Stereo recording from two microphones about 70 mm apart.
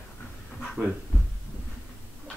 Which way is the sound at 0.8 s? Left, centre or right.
Right.